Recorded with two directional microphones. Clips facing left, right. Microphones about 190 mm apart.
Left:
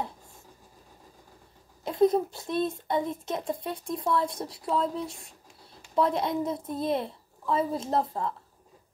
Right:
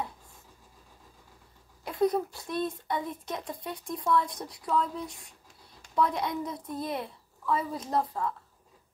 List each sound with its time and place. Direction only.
1.9 s speech: 25° left (ahead or behind)